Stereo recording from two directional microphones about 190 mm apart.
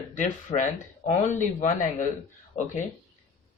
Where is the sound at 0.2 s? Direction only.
40° left (ahead or behind).